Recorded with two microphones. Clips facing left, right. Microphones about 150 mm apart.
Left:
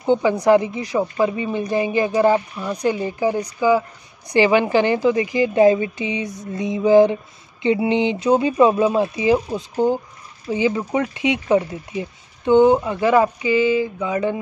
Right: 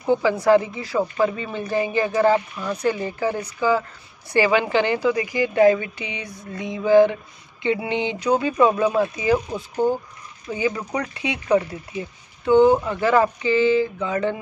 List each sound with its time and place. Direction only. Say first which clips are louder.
0.0 s a woman's voice: left 2 dB; 25° left (ahead or behind)